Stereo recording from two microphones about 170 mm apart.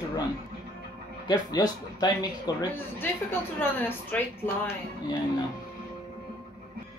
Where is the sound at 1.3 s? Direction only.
25° left (ahead or behind).